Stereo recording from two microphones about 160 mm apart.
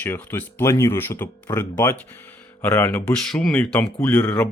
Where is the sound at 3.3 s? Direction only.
5° left (ahead or behind).